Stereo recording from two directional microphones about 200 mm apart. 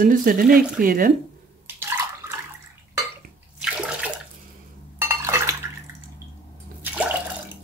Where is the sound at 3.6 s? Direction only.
5° right (ahead or behind).